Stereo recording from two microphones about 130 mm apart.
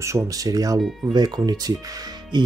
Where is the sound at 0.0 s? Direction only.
25° right (ahead or behind).